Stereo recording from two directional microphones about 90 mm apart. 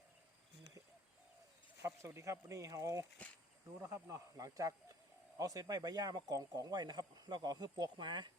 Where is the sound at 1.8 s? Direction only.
30° right (ahead or behind); by 8.3 s 60° right (ahead or behind).